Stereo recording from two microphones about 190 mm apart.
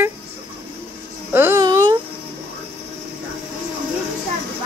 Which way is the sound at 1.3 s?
15° right (ahead or behind).